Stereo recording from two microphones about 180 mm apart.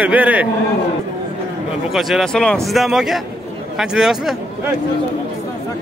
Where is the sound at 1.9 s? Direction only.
Centre (ahead or behind).